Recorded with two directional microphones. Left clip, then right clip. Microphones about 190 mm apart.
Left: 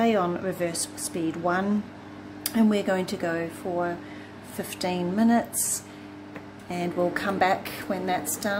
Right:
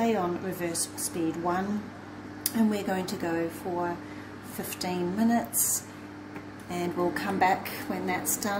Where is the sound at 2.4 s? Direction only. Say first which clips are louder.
Left 5 dB; 35° left (ahead or behind).